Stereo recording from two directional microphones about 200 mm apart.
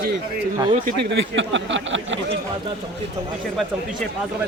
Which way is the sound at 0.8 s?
60° right (ahead or behind).